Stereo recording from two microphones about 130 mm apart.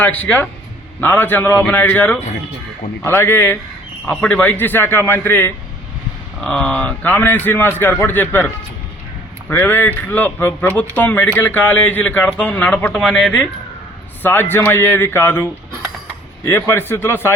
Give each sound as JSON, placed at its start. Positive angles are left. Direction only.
{"t": 0.0, "sound": "a man's voice", "side_deg": 10}
{"t": 9.5, "sound": "a man's voice", "side_deg": 15}